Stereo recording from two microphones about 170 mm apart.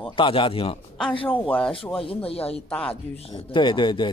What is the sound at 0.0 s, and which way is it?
A man's voice, 30° left (ahead or behind).